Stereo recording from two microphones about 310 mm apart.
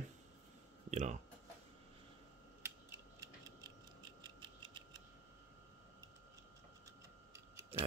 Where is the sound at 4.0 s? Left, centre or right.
Centre.